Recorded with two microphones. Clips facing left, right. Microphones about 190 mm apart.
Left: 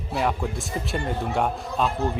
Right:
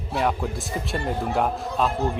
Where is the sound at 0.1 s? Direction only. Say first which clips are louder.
Right 1 dB; centre (ahead or behind).